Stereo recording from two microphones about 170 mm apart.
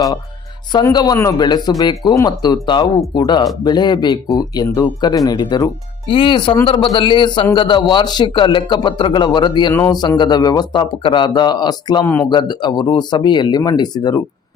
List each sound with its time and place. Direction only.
0.7 s speech: 25° left (ahead or behind)
12.0 s speech: 15° left (ahead or behind)
12.3 s speech: 25° left (ahead or behind)